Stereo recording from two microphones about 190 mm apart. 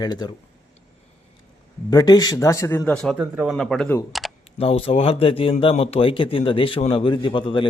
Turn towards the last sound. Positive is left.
turn(degrees=25)  # may be behind; listen again after turning